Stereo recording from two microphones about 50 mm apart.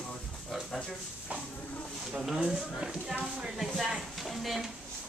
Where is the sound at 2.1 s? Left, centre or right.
Centre.